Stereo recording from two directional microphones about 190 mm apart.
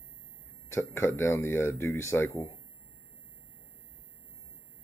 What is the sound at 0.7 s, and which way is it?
Speech, 15° left (ahead or behind).